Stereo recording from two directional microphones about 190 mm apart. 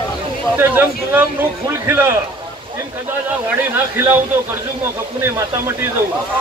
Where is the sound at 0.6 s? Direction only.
10° right (ahead or behind).